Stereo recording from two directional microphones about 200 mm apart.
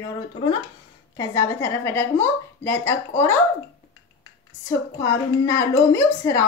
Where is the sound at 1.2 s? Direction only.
15° left (ahead or behind).